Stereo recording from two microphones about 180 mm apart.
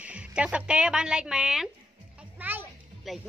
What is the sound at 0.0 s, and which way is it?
Speech, 5° right (ahead or behind).